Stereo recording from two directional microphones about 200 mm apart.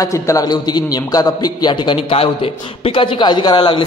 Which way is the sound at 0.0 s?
15° left (ahead or behind).